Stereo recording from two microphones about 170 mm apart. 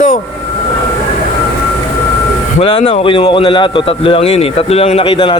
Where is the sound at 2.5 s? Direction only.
35° left (ahead or behind).